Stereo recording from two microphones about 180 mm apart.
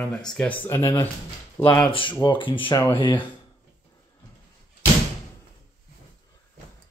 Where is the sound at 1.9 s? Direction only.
25° left (ahead or behind).